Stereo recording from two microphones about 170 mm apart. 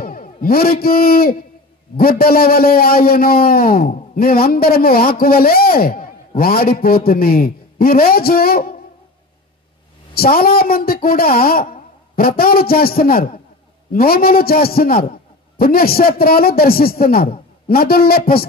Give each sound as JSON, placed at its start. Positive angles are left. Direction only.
{"t": 0.0, "sound": "a man's voice", "side_deg": 55}
{"t": 10.1, "sound": "a man's voice", "side_deg": 60}